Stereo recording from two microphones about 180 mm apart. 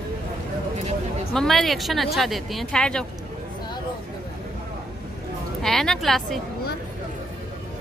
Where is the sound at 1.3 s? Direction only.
Centre (ahead or behind).